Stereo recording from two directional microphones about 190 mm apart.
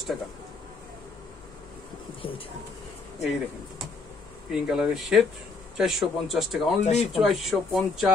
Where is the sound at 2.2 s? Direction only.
25° left (ahead or behind).